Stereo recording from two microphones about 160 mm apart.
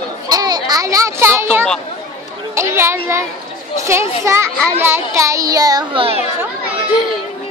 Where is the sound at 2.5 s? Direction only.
15° right (ahead or behind).